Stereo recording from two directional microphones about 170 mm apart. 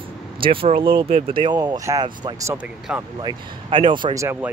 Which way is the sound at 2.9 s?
5° right (ahead or behind).